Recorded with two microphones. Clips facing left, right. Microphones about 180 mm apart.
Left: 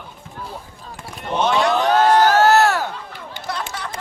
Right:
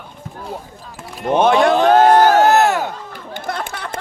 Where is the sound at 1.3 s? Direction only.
50° right (ahead or behind).